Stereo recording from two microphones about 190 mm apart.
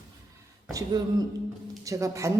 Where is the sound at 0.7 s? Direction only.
20° right (ahead or behind).